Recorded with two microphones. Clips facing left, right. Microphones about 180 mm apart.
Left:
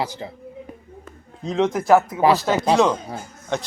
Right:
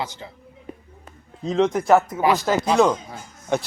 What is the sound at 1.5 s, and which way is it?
Speech, centre (ahead or behind).